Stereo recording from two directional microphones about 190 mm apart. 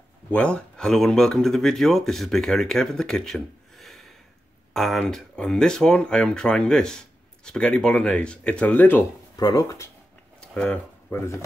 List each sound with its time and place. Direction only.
0.3 s speech: 5° left (ahead or behind)
10.4 s speech: 5° left (ahead or behind)